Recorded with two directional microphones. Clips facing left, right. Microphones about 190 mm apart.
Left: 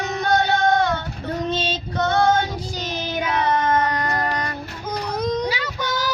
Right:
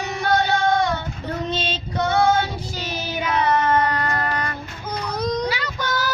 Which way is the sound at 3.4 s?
15° left (ahead or behind).